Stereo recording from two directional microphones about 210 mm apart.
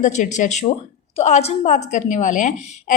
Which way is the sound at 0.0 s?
35° left (ahead or behind).